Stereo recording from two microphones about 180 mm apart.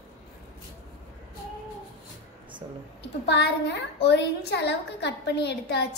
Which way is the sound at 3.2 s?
70° left (ahead or behind).